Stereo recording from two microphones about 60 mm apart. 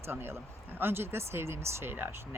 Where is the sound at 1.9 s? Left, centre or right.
Right.